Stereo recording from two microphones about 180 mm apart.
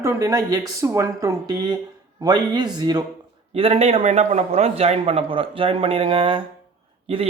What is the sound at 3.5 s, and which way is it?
Speech, 35° right (ahead or behind).